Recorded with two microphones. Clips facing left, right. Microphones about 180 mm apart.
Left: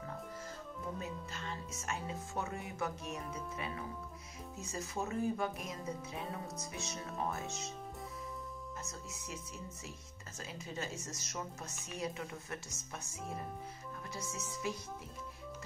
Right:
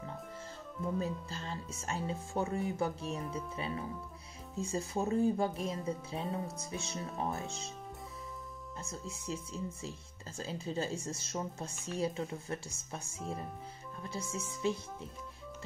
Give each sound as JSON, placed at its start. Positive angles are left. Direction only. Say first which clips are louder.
{"t": 0.9, "sound": "speech", "louder": "right 6 dB", "side_deg": -30}
{"t": 8.8, "sound": "speech", "louder": "right 6 dB", "side_deg": -30}